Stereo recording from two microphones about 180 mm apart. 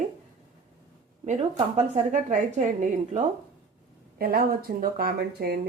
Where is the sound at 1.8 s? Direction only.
40° right (ahead or behind).